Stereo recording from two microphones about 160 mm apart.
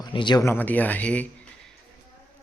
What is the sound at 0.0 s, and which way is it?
Speech, 30° left (ahead or behind).